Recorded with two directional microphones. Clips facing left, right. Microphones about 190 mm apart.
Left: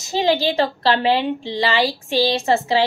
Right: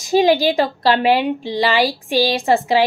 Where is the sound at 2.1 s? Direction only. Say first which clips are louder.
Right 1 dB; 15° right (ahead or behind).